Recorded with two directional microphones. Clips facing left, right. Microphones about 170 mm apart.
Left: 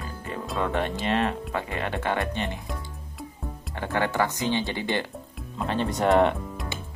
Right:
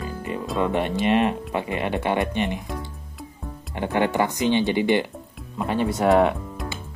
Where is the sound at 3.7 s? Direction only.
15° right (ahead or behind).